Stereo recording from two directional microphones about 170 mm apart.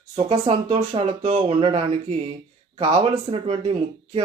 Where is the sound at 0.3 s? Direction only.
35° right (ahead or behind).